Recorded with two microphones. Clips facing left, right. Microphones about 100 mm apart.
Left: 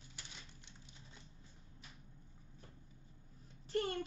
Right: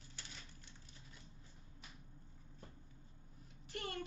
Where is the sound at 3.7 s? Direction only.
30° left (ahead or behind).